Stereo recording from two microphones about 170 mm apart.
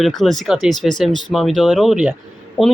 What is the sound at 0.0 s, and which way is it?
Speech, centre (ahead or behind).